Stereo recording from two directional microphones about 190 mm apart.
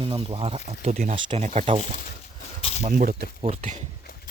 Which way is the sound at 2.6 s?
30° left (ahead or behind).